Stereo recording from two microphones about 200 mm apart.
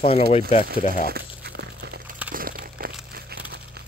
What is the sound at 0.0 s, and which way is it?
Speech, 30° left (ahead or behind).